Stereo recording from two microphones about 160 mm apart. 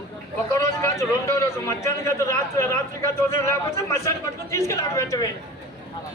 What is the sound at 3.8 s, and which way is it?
A man's voice, 20° left (ahead or behind).